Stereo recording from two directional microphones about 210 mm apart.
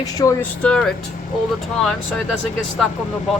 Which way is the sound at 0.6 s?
5° left (ahead or behind).